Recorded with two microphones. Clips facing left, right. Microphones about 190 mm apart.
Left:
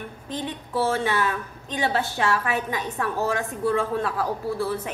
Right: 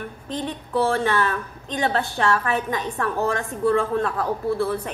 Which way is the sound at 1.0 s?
10° left (ahead or behind).